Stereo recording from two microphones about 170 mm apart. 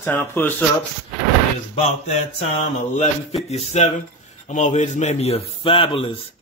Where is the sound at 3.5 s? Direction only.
40° left (ahead or behind).